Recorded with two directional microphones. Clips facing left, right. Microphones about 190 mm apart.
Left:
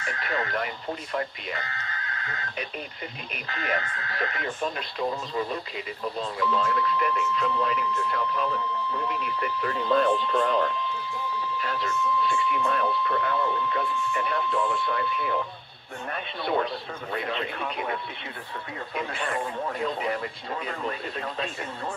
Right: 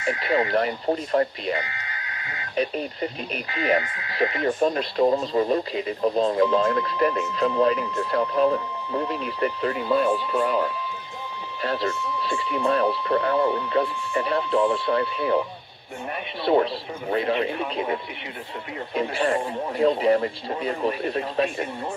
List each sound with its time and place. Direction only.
0.0 s speech: 15° right (ahead or behind)
0.6 s speech: 40° right (ahead or behind)
1.5 s a sound: 15° right (ahead or behind)
2.5 s speech: 35° right (ahead or behind)
3.4 s speech: 15° right (ahead or behind)
4.5 s speech: 40° right (ahead or behind)
9.8 s speech: 10° right (ahead or behind)
11.6 s speech: 35° right (ahead or behind)
13.4 s speech: 15° right (ahead or behind)
13.7 s speech: 30° right (ahead or behind)
16.5 s speech: 30° right (ahead or behind)
18.9 s speech: 30° right (ahead or behind)